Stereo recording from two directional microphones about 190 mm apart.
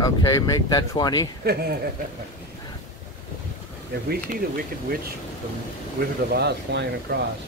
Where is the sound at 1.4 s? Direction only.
55° right (ahead or behind).